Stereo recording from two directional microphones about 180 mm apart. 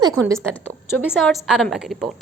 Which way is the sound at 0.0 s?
15° right (ahead or behind).